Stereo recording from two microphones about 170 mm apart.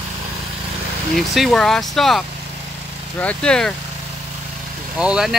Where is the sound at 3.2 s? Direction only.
5° left (ahead or behind).